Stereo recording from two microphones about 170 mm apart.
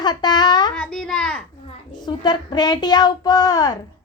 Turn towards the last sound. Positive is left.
turn(degrees=20)  # may be behind; listen again after turning